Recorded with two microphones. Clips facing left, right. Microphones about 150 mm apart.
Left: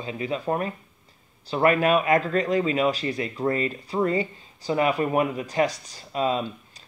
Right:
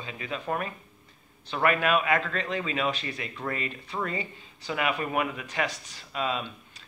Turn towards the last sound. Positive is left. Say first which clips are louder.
# left 6 dB
turn(degrees=35)  # may be behind; listen again after turning